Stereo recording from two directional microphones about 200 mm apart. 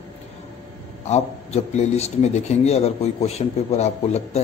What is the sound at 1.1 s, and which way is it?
A man's voice, 35° left (ahead or behind).